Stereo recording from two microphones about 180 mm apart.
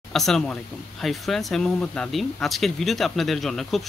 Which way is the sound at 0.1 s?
Centre (ahead or behind).